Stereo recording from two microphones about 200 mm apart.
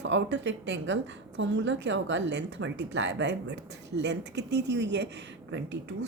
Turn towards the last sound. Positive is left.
turn(degrees=-60)  # may be behind; listen again after turning